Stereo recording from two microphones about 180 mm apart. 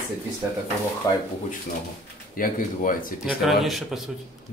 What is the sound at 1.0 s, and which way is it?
Speech, 20° left (ahead or behind).